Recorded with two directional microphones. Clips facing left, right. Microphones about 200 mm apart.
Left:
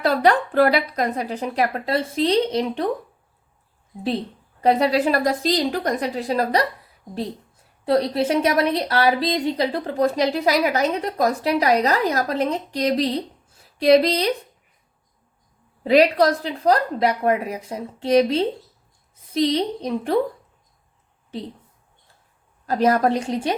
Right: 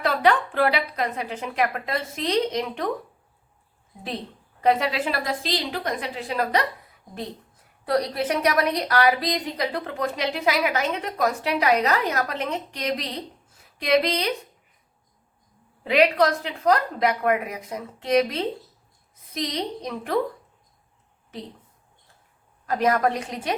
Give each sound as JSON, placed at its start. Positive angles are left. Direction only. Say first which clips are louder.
{"t": 0.0, "sound": "a woman's voice", "louder": "left 3 dB", "side_deg": 40}
{"t": 4.6, "sound": "a woman's voice", "louder": "left 4 dB", "side_deg": 35}
{"t": 7.9, "sound": "a woman's voice", "louder": "left 4 dB", "side_deg": 25}
{"t": 15.8, "sound": "a woman's voice", "louder": "left 4 dB", "side_deg": 35}
{"t": 22.6, "sound": "a woman's voice", "louder": "left 3 dB", "side_deg": 30}